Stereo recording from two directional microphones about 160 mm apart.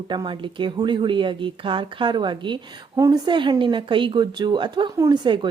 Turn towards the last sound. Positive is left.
turn(degrees=-30)  # may be behind; listen again after turning